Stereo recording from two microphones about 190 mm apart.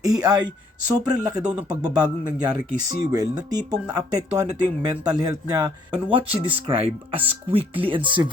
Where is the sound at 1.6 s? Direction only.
20° right (ahead or behind).